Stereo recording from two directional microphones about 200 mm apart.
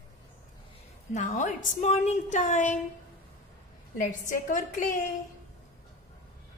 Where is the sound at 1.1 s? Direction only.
40° left (ahead or behind).